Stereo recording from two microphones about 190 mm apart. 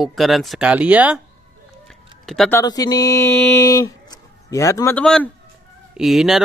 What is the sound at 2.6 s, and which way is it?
Speech, 20° left (ahead or behind).